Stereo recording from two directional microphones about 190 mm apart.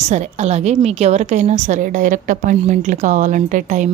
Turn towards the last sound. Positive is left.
turn(degrees=-40)  # may be behind; listen again after turning